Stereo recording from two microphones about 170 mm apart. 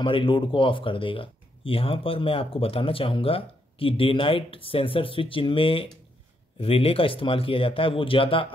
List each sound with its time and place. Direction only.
0.0 s speech: 30° left (ahead or behind)